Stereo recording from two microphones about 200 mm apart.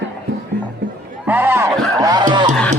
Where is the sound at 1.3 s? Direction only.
10° right (ahead or behind).